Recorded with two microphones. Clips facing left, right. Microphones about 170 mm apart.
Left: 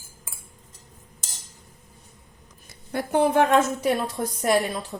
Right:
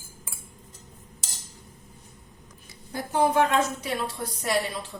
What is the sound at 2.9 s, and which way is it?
A woman's voice, 65° left (ahead or behind).